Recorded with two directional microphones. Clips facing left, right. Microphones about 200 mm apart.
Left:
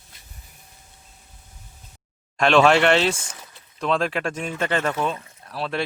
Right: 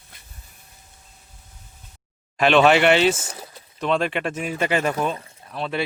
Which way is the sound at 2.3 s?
Centre (ahead or behind).